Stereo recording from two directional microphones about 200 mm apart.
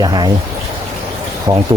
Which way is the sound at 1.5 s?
20° right (ahead or behind).